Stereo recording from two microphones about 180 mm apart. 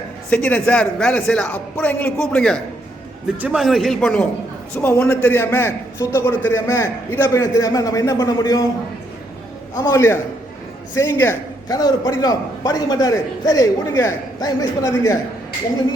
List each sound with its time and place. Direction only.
0.3 s a man's voice: 10° left (ahead or behind)
3.3 s a man's voice: 5° right (ahead or behind); by 8.6 s 20° left (ahead or behind)
9.7 s a man's voice: 15° left (ahead or behind)